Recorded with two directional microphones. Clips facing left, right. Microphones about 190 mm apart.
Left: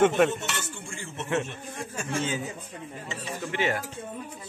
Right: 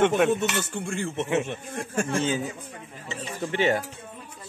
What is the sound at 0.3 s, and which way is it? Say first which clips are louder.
Music: right 8 dB; 65° right (ahead or behind).